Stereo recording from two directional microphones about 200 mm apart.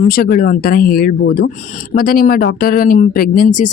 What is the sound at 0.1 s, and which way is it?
Speech, 45° left (ahead or behind).